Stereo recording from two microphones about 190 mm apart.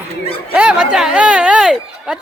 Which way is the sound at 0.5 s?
5° right (ahead or behind).